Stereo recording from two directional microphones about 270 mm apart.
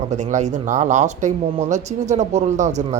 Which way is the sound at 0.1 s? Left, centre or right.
Right.